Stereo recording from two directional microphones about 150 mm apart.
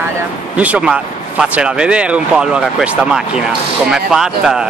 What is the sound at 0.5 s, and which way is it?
Speech, 10° right (ahead or behind).